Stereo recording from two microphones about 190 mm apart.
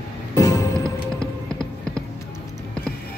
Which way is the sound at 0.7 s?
15° right (ahead or behind).